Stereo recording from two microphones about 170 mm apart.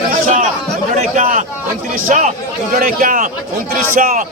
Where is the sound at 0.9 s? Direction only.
40° right (ahead or behind).